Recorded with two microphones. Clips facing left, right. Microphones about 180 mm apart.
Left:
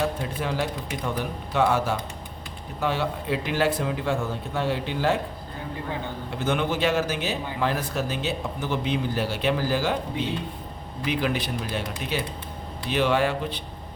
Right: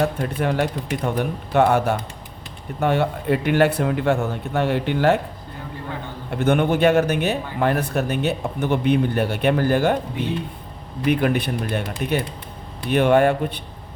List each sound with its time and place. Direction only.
0.2 s speech: 60° right (ahead or behind)
6.3 s speech: 60° right (ahead or behind)
11.0 s speech: 55° right (ahead or behind)